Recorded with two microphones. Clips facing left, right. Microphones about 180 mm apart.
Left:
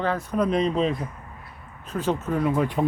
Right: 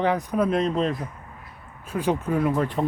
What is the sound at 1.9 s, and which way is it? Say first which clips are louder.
Speech: right 1 dB; 15° right (ahead or behind).